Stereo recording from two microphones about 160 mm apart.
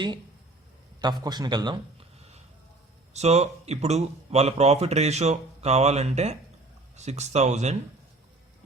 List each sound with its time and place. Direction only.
1.0 s a man's voice: 25° right (ahead or behind)
3.1 s speech: 45° right (ahead or behind)